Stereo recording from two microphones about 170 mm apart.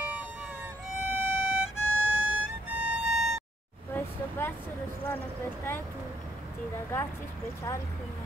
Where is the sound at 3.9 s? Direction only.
10° left (ahead or behind).